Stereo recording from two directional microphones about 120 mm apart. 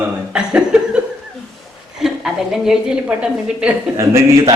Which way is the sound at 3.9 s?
25° right (ahead or behind).